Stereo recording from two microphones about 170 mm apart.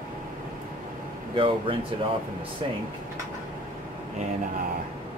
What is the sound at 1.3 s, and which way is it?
Speech, 30° right (ahead or behind).